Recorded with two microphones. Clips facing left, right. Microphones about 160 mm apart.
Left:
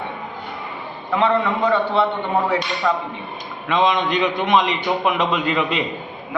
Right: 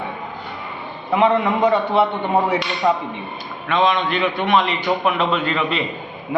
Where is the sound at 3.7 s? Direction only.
20° left (ahead or behind).